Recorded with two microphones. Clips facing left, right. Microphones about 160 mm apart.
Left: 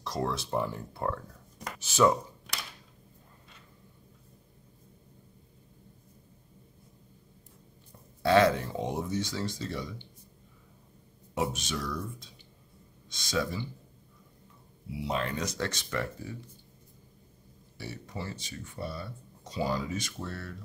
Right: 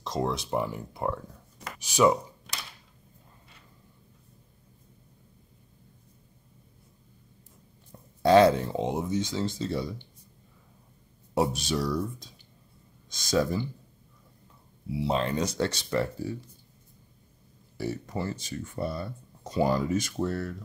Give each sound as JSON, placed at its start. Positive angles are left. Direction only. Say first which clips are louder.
{"t": 0.0, "sound": "speech", "louder": "right 3 dB", "side_deg": -20}
{"t": 8.3, "sound": "speech", "louder": "right 4 dB", "side_deg": -30}
{"t": 11.3, "sound": "speech", "louder": "right 5 dB", "side_deg": -35}
{"t": 15.0, "sound": "speech", "louder": "right 5 dB", "side_deg": -30}
{"t": 17.7, "sound": "speech", "louder": "right 8 dB", "side_deg": -50}